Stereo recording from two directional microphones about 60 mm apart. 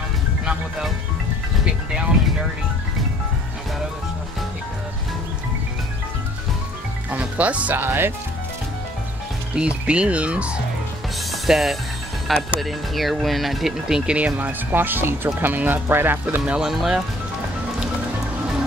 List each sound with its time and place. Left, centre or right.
7.1 s music: right
7.8 s speech: right
9.6 s speech: centre
11.4 s speech: centre
14.1 s speech: right
16.6 s speech: centre